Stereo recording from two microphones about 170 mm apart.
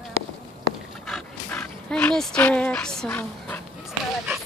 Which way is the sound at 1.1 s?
5° left (ahead or behind).